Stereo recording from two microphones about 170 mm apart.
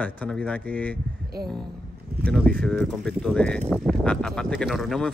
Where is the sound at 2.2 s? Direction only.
5° left (ahead or behind).